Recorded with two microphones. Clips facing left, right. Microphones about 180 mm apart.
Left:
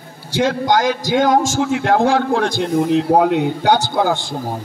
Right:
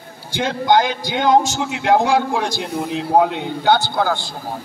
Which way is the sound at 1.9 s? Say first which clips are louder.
Right 1 dB; 15° right (ahead or behind).